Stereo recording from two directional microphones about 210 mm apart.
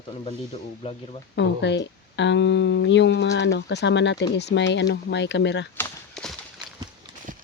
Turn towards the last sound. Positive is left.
turn(degrees=5)  # may be behind; listen again after turning